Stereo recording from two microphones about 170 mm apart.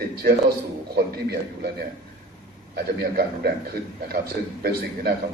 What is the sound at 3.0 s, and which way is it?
Speech, 60° right (ahead or behind).